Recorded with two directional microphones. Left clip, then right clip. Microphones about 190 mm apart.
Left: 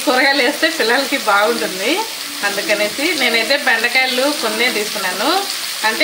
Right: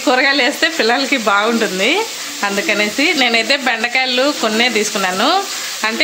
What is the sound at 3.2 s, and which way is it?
Speech, 60° right (ahead or behind).